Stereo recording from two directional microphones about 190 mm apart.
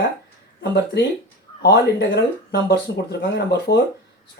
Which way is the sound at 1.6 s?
60° left (ahead or behind).